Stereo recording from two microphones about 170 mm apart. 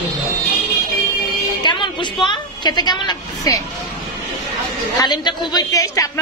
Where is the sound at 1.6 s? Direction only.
25° left (ahead or behind).